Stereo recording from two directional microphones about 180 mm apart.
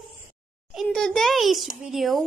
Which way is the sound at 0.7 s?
Centre (ahead or behind).